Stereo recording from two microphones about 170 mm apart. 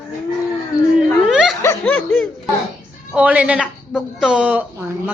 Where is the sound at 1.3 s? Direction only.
Centre (ahead or behind).